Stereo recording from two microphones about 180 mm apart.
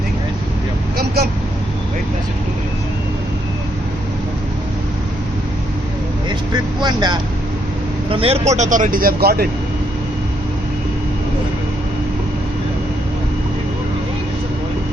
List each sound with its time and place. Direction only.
0.9 s vehicle: 60° right (ahead or behind)
6.8 s speech: 25° right (ahead or behind); by 9.5 s 60° right (ahead or behind)